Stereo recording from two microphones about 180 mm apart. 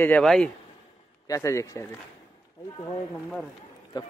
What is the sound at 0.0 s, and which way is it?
Speech, 5° left (ahead or behind).